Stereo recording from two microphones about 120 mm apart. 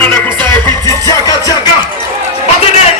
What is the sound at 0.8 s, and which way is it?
Music, 30° left (ahead or behind).